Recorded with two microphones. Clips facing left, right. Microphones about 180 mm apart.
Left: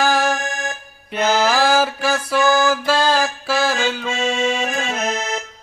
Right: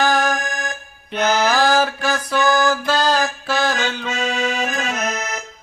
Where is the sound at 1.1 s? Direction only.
5° left (ahead or behind).